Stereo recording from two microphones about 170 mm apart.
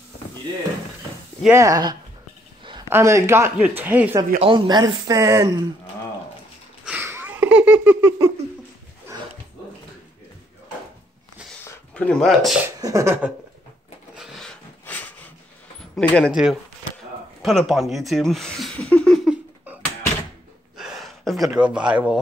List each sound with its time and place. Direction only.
1.5 s speech: 20° right (ahead or behind)
4.4 s speech: 25° right (ahead or behind)
6.8 s a sound: 10° right (ahead or behind)
11.6 s a sound: 5° left (ahead or behind)
12.6 s speech: 15° right (ahead or behind)
14.1 s a sound: centre (ahead or behind)
16.3 s speech: 5° right (ahead or behind)
20.7 s gasp: 5° right (ahead or behind)
21.5 s speech: 5° right (ahead or behind)